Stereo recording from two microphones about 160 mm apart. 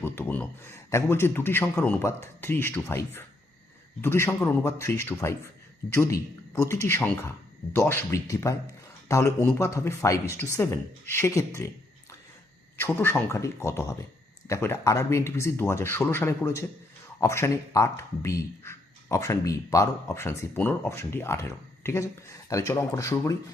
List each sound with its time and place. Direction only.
0.0 s speech: 10° left (ahead or behind)
12.8 s speech: 15° left (ahead or behind)